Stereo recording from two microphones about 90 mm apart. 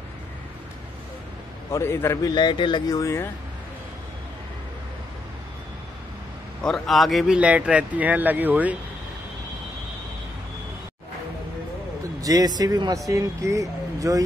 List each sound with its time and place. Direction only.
1.7 s a man's voice: 30° left (ahead or behind)
2.3 s speech: 65° left (ahead or behind)
2.9 s speech: 35° left (ahead or behind)
6.6 s a man's voice: 5° left (ahead or behind)
7.3 s speech: 15° right (ahead or behind)
12.2 s speech: 40° right (ahead or behind)